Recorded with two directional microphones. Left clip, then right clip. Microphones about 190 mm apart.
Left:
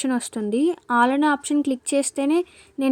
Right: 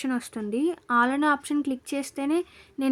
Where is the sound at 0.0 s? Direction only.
20° left (ahead or behind).